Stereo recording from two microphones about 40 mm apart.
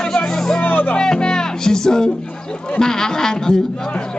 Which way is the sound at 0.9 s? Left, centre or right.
Centre.